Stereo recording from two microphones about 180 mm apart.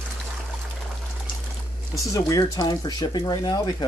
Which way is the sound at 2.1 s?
20° left (ahead or behind).